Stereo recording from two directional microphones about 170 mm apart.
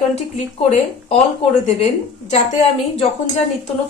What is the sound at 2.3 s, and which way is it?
Speech, 40° left (ahead or behind).